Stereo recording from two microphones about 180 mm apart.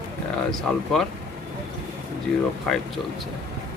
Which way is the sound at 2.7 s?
Centre (ahead or behind).